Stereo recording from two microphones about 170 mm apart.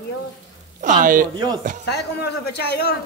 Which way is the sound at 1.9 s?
75° left (ahead or behind).